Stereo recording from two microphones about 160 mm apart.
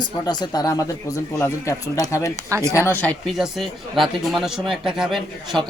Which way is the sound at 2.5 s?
20° right (ahead or behind).